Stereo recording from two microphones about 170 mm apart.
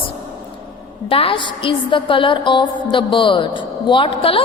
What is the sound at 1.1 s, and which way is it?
A woman's voice, 30° left (ahead or behind).